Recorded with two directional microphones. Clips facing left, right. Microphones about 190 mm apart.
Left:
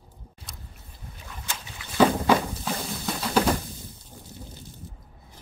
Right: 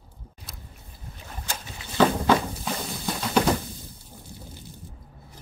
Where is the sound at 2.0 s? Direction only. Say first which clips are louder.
Left 1 dB; 5° left (ahead or behind).